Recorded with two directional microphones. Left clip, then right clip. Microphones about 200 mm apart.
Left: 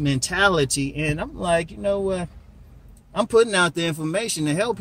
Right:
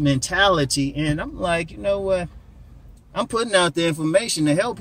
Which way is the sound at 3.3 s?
15° left (ahead or behind).